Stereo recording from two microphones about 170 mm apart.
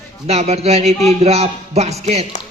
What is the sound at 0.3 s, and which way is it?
Speech, 40° right (ahead or behind).